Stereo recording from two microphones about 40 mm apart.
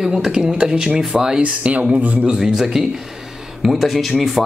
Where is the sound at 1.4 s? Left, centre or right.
Right.